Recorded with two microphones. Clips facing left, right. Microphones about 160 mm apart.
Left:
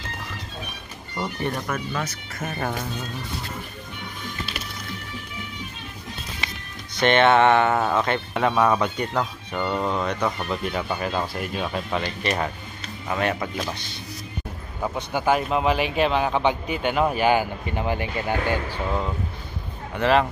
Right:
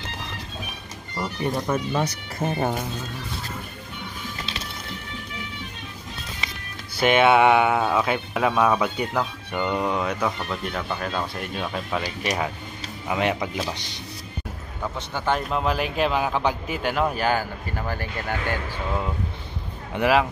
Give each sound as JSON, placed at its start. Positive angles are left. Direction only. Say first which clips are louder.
{"t": 1.2, "sound": "speech", "louder": "right 1 dB", "side_deg": -10}
{"t": 1.7, "sound": "speech", "louder": "right 4 dB", "side_deg": -30}
{"t": 2.5, "sound": "speech", "louder": "right 2 dB", "side_deg": -15}
{"t": 7.0, "sound": "speech", "louder": "even", "side_deg": -5}
{"t": 10.5, "sound": "speech", "louder": "left 2 dB", "side_deg": 5}
{"t": 12.0, "sound": "speech", "louder": "left 1 dB", "side_deg": -10}
{"t": 14.8, "sound": "speech", "louder": "left 4 dB", "side_deg": 15}
{"t": 20.0, "sound": "speech", "louder": "even", "side_deg": -5}